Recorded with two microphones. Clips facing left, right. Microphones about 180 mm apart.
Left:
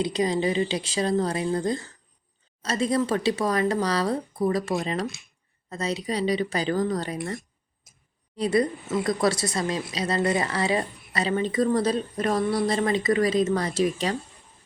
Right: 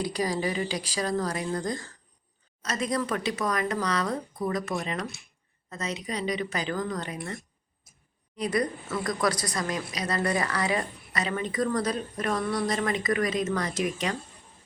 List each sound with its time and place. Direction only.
0.0 s speech: 20° left (ahead or behind)
7.9 s a sound: 90° left
8.4 s speech: 25° left (ahead or behind)